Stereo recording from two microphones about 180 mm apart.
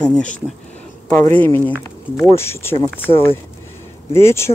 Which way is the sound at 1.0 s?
10° left (ahead or behind).